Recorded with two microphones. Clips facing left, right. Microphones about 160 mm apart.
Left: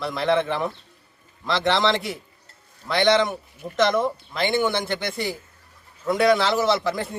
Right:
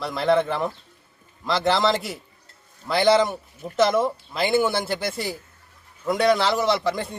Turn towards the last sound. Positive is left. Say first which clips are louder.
# even
turn(degrees=0)  # may be behind; listen again after turning